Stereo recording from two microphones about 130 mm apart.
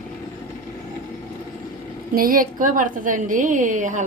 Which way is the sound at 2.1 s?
90° right.